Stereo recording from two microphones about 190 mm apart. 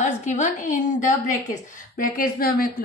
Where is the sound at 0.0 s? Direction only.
40° left (ahead or behind).